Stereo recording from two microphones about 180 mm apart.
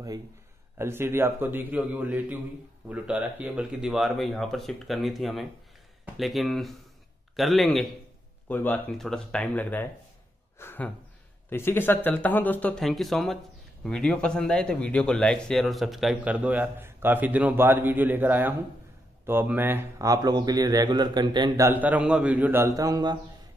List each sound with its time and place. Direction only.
0.7 s a man's voice: 15° right (ahead or behind); by 9.8 s 10° left (ahead or behind)
10.6 s a sound: 10° left (ahead or behind)
11.5 s speech: 10° left (ahead or behind); by 21.6 s 25° right (ahead or behind)
21.6 s a man's voice: 10° right (ahead or behind)